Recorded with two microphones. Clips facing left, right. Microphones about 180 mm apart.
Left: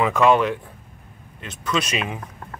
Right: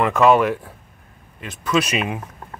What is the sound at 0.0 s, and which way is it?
Speech, centre (ahead or behind).